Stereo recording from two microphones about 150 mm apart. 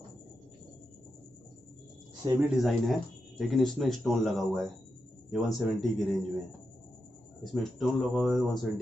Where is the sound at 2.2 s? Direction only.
30° right (ahead or behind).